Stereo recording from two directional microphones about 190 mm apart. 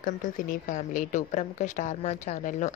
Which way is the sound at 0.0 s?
45° left (ahead or behind).